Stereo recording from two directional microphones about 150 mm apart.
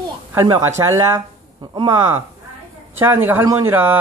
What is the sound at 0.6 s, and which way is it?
Speech, 20° right (ahead or behind).